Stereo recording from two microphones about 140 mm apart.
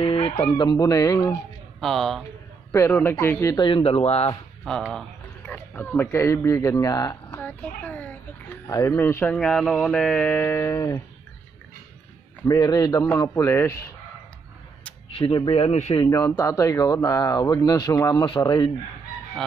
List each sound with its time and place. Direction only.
0.0 s speech: 45° left (ahead or behind); by 1.4 s 25° left (ahead or behind)
1.8 s speech: centre (ahead or behind)
2.7 s speech: 20° left (ahead or behind)
3.5 s speech: 40° left (ahead or behind)
4.6 s speech: 5° left (ahead or behind); by 7.2 s 25° left (ahead or behind)
7.2 s a sound: 15° left (ahead or behind)
8.6 s speech: 20° left (ahead or behind)
12.4 s speech: 30° left (ahead or behind)
15.0 s speech: 40° left (ahead or behind)
16.1 s speech: 25° left (ahead or behind)